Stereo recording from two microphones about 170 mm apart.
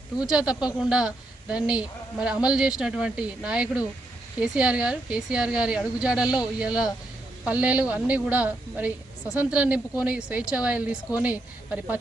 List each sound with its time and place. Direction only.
0.3 s a woman's voice: 5° right (ahead or behind)